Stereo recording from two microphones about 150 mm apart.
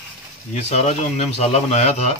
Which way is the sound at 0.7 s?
45° left (ahead or behind).